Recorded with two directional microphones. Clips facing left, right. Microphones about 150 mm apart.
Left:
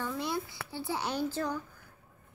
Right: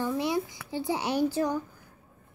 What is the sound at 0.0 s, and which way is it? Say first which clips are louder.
A woman's voice: right 6 dB; 15° right (ahead or behind).